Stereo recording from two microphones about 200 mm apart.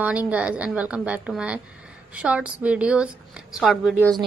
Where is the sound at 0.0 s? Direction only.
5° right (ahead or behind).